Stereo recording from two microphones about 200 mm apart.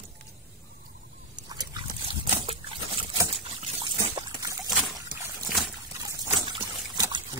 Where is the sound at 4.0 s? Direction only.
20° right (ahead or behind).